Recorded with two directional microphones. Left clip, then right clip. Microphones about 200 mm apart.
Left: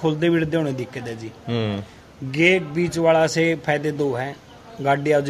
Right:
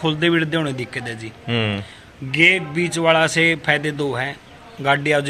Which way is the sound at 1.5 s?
Centre (ahead or behind).